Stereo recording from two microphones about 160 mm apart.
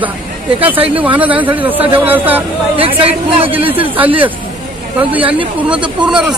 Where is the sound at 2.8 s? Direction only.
35° right (ahead or behind).